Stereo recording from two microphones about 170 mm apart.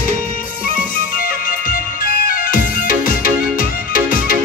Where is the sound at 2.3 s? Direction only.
55° left (ahead or behind).